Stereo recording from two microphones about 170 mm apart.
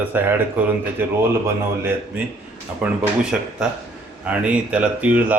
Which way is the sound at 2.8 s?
5° right (ahead or behind).